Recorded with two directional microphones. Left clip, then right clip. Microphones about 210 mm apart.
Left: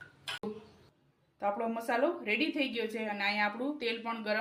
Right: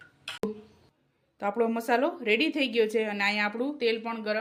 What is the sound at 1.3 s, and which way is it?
Speech, 55° right (ahead or behind).